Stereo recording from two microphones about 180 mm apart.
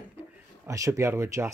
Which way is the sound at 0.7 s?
15° right (ahead or behind).